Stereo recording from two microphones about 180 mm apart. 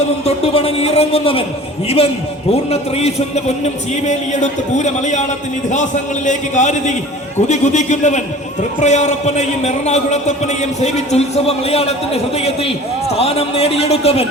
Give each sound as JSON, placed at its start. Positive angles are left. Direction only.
{"t": 0.3, "sound": "a man's voice", "side_deg": 35}
{"t": 2.5, "sound": "a man's voice", "side_deg": 35}